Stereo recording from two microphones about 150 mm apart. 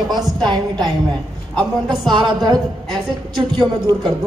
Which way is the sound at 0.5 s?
30° right (ahead or behind).